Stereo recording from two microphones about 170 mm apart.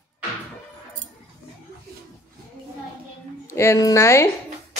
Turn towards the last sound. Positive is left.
turn(degrees=15)  # may be behind; listen again after turning